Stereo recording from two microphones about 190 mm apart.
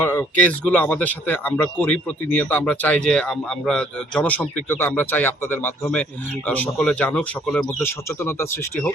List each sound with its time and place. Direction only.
0.0 s speech: 10° left (ahead or behind)
7.8 s speech: 15° left (ahead or behind)